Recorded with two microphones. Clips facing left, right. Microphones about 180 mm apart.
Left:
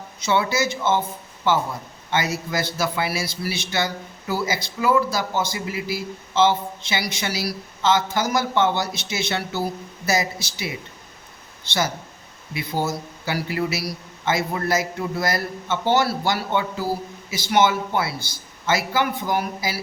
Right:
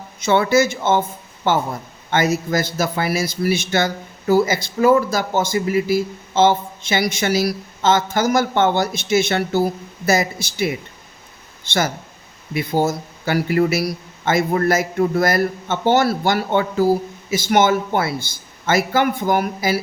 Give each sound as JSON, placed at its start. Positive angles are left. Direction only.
{"t": 0.2, "sound": "a man's voice", "side_deg": -50}
{"t": 12.5, "sound": "a man's voice", "side_deg": -50}